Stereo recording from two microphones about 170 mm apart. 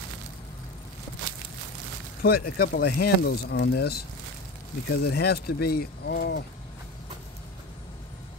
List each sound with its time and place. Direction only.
2.2 s speech: 65° left (ahead or behind)
5.0 s speech: 70° left (ahead or behind)